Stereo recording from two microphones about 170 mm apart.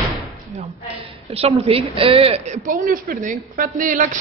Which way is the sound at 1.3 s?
35° right (ahead or behind).